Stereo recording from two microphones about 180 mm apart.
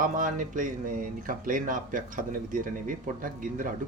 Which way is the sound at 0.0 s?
45° right (ahead or behind).